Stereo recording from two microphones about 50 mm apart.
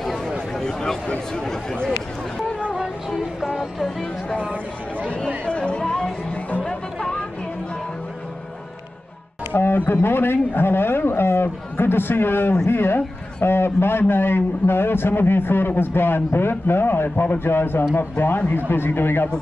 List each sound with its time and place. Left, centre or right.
0.6 s a sound: centre
1.3 s speech: centre
5.0 s speech: centre
5.4 s music: left
6.6 s chatter: centre
9.5 s a sound: left
9.8 s a man's voice: left